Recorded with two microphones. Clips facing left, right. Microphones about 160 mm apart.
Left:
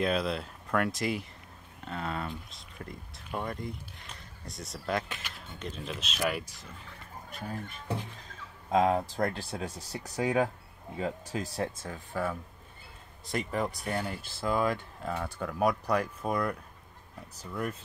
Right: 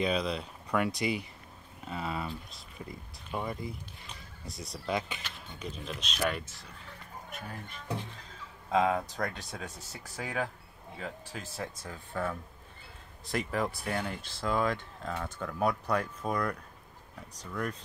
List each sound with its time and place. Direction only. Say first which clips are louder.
0.0 s speech: left 1 dB; centre (ahead or behind)
7.2 s speech: left 4 dB; 30° left (ahead or behind)
8.6 s speech: left 2 dB; 25° left (ahead or behind)
11.3 s speech: left 6 dB; 40° left (ahead or behind)
11.8 s speech: left 2 dB; 20° left (ahead or behind)
13.2 s speech: even; centre (ahead or behind)